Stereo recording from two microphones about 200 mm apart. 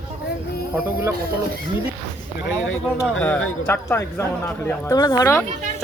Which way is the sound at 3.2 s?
5° left (ahead or behind).